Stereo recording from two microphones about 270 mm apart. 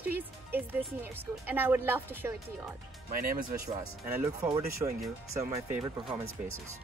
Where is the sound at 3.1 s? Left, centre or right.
Right.